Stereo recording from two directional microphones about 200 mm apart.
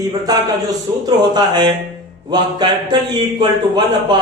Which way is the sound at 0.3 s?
20° right (ahead or behind).